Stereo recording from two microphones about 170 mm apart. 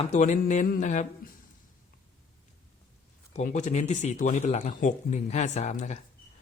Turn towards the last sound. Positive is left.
turn(degrees=45)  # may be behind; listen again after turning